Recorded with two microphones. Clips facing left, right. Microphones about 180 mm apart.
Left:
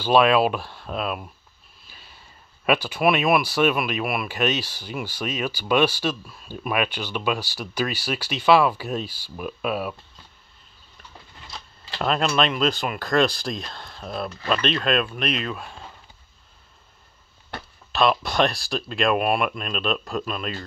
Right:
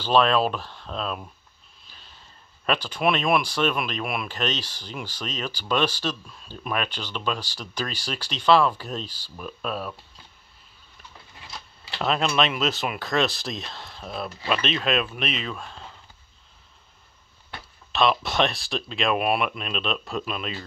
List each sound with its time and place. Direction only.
0.0 s speech: 10° left (ahead or behind)
1.9 s sniff: 10° left (ahead or behind)
2.6 s speech: 10° left (ahead or behind)
12.0 s speech: centre (ahead or behind)
17.9 s speech: centre (ahead or behind)